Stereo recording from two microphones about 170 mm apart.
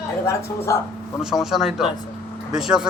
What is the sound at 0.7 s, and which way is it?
Speech, 20° left (ahead or behind).